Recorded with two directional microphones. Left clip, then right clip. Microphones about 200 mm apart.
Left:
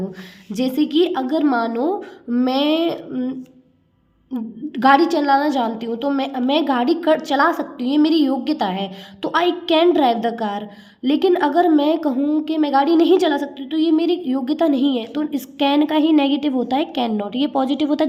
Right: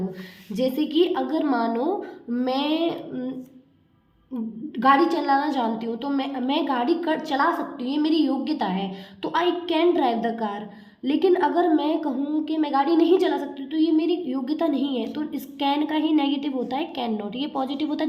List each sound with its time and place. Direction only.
0.5 s a woman's voice: 40° left (ahead or behind)
4.4 s a woman's voice: 45° left (ahead or behind)